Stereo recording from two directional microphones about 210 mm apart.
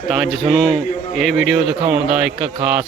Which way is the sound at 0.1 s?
Centre (ahead or behind).